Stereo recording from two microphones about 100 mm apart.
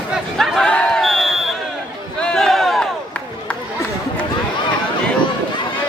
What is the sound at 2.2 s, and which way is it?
Crowd, 5° left (ahead or behind).